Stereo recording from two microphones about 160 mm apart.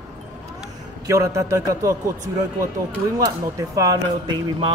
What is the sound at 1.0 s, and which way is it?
Speech, 20° right (ahead or behind).